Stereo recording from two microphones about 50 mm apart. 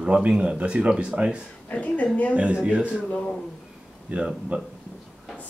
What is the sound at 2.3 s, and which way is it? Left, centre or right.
Speech, right.